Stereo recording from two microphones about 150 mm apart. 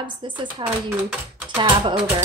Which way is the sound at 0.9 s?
5° right (ahead or behind).